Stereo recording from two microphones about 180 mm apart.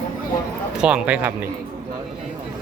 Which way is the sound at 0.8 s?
5° right (ahead or behind).